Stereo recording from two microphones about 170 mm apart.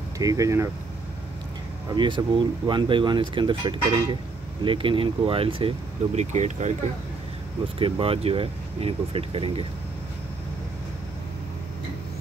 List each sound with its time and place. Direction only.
0.2 s speech: 20° right (ahead or behind)
2.0 s speech: 30° right (ahead or behind)
7.8 s speech: 35° right (ahead or behind)